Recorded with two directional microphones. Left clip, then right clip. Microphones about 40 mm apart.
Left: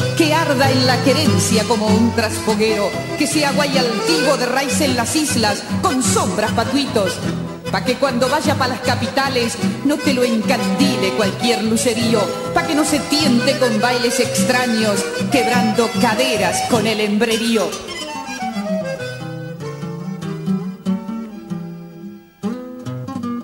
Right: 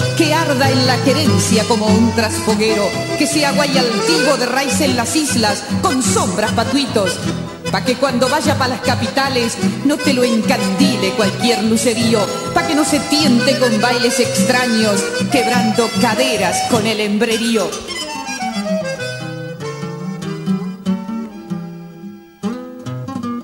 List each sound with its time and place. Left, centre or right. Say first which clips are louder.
0.0 s music: right 1 dB; right
2.1 s music: right 2 dB; right
9.0 s music: right 1 dB; right
10.8 s music: right 1 dB; right
16.0 s music: right 1 dB; right